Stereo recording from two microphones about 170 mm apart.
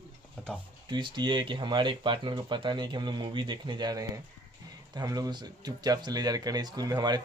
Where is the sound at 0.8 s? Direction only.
25° right (ahead or behind).